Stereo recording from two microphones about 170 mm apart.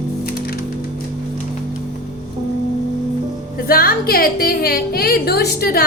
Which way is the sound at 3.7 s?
60° left (ahead or behind).